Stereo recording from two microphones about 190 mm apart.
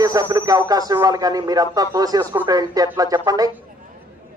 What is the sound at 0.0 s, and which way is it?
Speech, 20° right (ahead or behind).